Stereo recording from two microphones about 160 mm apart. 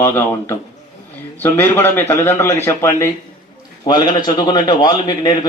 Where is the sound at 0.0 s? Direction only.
15° left (ahead or behind).